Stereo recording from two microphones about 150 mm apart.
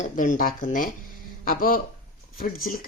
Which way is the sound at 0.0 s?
60° left (ahead or behind).